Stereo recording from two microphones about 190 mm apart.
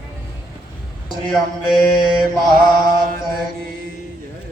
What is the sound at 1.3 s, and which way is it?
Mantra, 5° right (ahead or behind).